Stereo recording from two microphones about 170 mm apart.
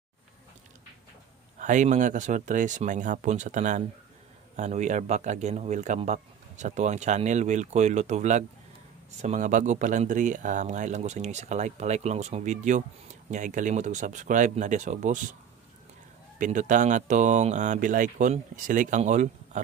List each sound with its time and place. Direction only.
1.6 s speech: 45° right (ahead or behind)
16.3 s speech: 50° right (ahead or behind)